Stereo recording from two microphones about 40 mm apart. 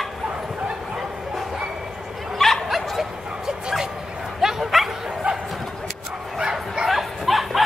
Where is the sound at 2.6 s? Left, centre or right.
Centre.